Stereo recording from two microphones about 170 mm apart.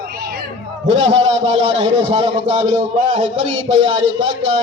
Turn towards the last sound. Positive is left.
turn(degrees=-25)  # may be behind; listen again after turning